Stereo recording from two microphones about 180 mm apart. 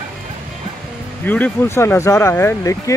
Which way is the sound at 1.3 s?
10° left (ahead or behind).